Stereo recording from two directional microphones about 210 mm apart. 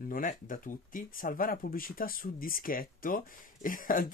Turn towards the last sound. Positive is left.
turn(degrees=40)  # may be behind; listen again after turning